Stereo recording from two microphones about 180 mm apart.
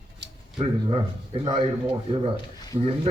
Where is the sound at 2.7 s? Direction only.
30° right (ahead or behind).